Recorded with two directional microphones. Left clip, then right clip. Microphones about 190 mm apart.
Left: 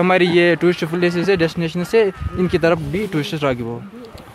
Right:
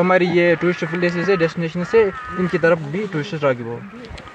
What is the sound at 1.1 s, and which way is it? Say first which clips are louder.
Speech: left 1 dB; 20° left (ahead or behind).